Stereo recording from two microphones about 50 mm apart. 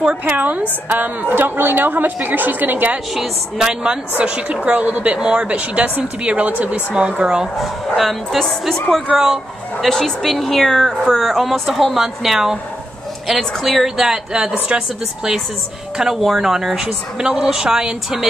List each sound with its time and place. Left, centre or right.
0.2 s a woman's voice: right
3.2 s a woman's voice: centre
7.6 s a woman's voice: centre
9.1 s a woman's voice: centre
9.8 s a woman's voice: centre
16.0 s a woman's voice: centre